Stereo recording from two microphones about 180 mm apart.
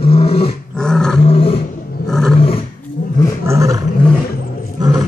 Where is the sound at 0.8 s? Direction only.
5° left (ahead or behind).